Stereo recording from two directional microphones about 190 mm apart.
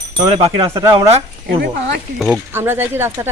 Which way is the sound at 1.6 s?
60° right (ahead or behind).